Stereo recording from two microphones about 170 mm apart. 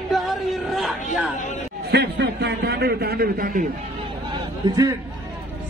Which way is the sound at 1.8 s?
75° right (ahead or behind).